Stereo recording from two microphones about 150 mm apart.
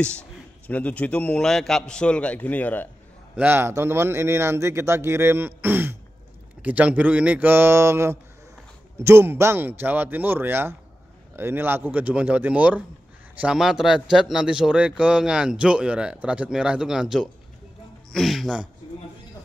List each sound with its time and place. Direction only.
0.0 s a man's voice: 10° left (ahead or behind)
3.3 s a man's voice: 15° right (ahead or behind)